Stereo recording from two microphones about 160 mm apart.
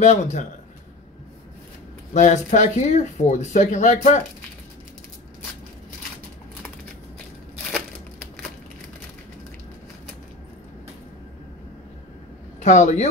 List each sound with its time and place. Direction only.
0.0 s speech: 50° left (ahead or behind)
2.1 s speech: 50° left (ahead or behind)
12.6 s speech: 50° left (ahead or behind)